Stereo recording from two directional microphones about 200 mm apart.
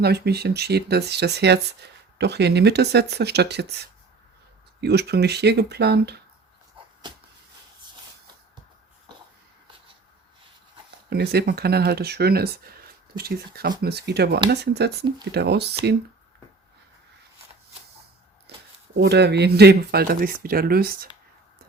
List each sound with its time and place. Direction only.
0.0 s speech: 55° right (ahead or behind)
11.1 s speech: 55° right (ahead or behind)
18.5 s shuffling cards: 55° right (ahead or behind)
18.9 s speech: 55° right (ahead or behind)